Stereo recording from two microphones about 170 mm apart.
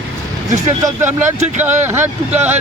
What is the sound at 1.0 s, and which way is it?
Speech, 45° right (ahead or behind).